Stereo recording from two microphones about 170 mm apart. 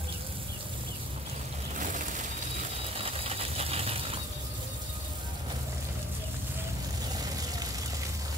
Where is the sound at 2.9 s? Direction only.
35° right (ahead or behind).